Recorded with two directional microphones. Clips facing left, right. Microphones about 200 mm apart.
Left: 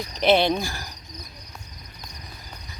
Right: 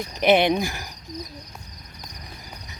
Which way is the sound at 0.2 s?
15° right (ahead or behind).